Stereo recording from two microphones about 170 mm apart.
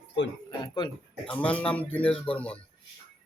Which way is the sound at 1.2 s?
5° left (ahead or behind).